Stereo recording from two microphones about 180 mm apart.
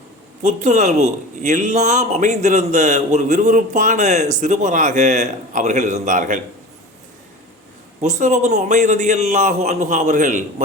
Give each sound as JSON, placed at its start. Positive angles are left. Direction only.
{"t": 0.4, "sound": "a man's voice", "side_deg": -40}
{"t": 8.0, "sound": "a man's voice", "side_deg": -40}